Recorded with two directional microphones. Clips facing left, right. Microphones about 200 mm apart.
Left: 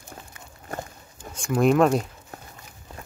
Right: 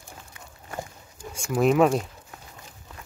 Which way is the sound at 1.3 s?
5° right (ahead or behind).